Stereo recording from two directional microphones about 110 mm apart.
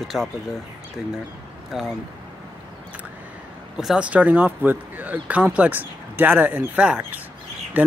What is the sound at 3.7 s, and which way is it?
Speech, 5° right (ahead or behind).